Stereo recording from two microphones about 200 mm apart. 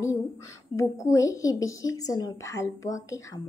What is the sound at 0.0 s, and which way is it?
A woman's voice, 15° left (ahead or behind).